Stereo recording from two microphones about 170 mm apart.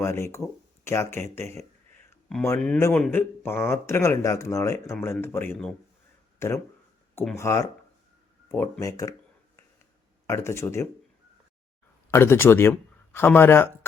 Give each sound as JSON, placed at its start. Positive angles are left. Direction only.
{"t": 0.0, "sound": "speech", "side_deg": 15}
{"t": 2.7, "sound": "speech", "side_deg": 15}
{"t": 10.2, "sound": "speech", "side_deg": 15}
{"t": 12.1, "sound": "speech", "side_deg": 15}